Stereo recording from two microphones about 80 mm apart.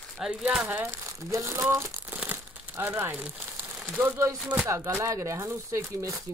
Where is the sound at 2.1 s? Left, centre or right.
Right.